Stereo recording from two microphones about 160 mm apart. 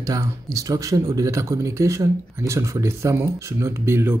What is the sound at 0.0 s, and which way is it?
Speech, 20° right (ahead or behind).